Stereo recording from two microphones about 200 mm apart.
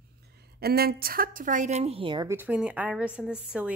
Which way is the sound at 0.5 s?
50° right (ahead or behind).